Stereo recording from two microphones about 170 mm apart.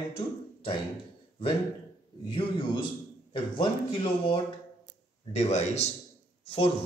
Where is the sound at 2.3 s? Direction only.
30° left (ahead or behind).